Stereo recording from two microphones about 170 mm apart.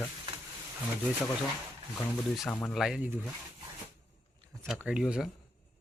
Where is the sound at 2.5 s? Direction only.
5° left (ahead or behind).